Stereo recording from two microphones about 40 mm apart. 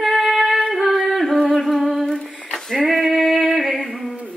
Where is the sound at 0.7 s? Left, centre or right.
Centre.